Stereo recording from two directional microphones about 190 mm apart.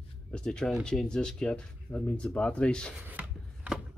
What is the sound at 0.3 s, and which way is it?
Speech, 5° left (ahead or behind).